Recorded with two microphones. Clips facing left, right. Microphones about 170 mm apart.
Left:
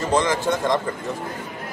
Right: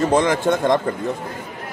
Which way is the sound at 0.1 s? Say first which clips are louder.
Right 3 dB; 55° right (ahead or behind).